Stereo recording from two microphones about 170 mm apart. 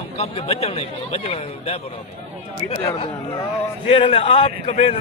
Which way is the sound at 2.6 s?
30° left (ahead or behind).